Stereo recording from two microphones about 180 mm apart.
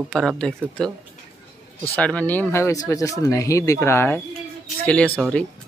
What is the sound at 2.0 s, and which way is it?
Speech, 5° left (ahead or behind).